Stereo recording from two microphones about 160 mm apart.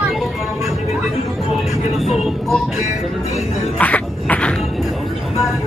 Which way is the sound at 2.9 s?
45° left (ahead or behind).